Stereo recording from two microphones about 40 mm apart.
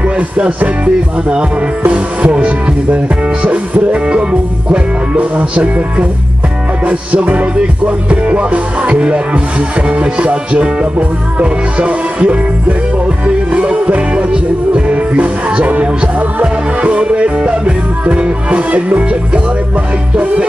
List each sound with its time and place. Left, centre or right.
0.0 s music: right
1.9 s music: right